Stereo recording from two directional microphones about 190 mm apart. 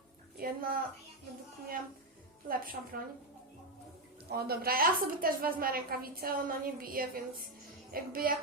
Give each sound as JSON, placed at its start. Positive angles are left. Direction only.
{"t": 0.3, "sound": "a woman's voice", "side_deg": -50}
{"t": 2.5, "sound": "a woman's voice", "side_deg": -50}
{"t": 4.3, "sound": "a woman's voice", "side_deg": -55}